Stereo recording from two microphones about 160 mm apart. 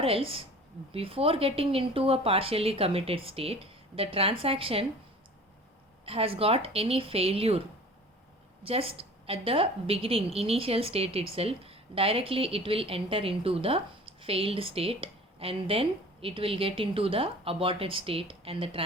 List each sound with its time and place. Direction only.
0.0 s a woman's voice: 35° right (ahead or behind)
6.1 s a woman's voice: 35° right (ahead or behind)
8.6 s a woman's voice: 35° right (ahead or behind)